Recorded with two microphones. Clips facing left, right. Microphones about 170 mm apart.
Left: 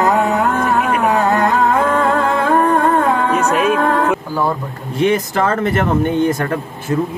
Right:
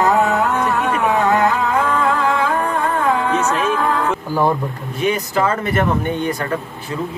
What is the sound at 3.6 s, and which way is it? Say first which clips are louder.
Music: left 4 dB; 55° left (ahead or behind).